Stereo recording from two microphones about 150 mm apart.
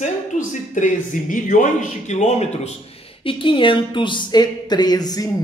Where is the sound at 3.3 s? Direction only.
35° left (ahead or behind).